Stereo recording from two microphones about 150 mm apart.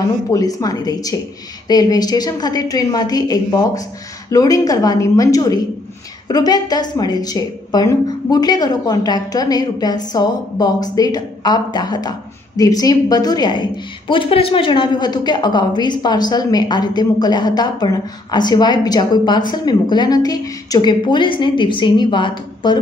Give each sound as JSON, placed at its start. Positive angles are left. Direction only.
{"t": 0.3, "sound": "a woman's voice", "side_deg": 25}